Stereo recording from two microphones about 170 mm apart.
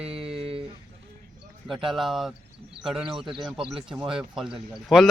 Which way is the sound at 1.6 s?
Centre (ahead or behind).